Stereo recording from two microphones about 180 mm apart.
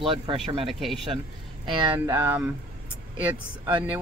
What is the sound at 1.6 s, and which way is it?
Speech, 25° right (ahead or behind).